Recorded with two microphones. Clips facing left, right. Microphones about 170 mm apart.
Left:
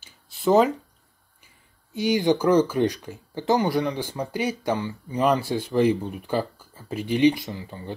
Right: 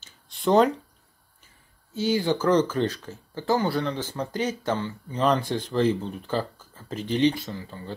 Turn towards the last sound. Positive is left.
turn(degrees=15)  # may be behind; listen again after turning